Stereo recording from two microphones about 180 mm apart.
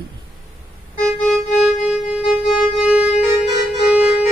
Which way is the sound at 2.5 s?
5° right (ahead or behind).